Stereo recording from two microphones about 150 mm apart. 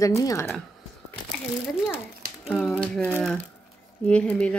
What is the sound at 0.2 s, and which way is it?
Speech, 20° left (ahead or behind).